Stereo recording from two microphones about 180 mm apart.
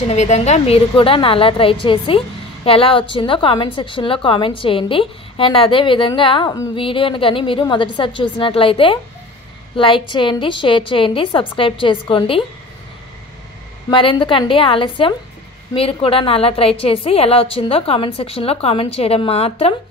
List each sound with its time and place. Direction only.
0.1 s a woman's voice: 40° left (ahead or behind)
13.8 s a woman's voice: 25° left (ahead or behind)